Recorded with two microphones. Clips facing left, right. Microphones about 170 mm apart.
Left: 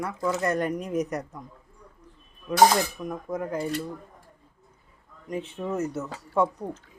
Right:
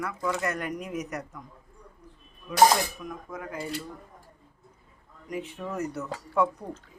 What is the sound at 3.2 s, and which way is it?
Speech, 40° left (ahead or behind).